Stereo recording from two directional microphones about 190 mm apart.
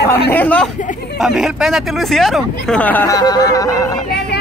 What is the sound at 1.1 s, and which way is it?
Speech, centre (ahead or behind).